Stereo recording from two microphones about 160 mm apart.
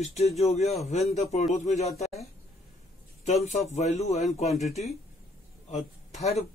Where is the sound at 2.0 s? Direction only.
40° left (ahead or behind).